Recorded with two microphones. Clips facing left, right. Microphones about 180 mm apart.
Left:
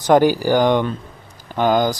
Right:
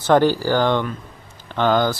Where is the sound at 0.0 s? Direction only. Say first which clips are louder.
Left 2 dB; 10° left (ahead or behind).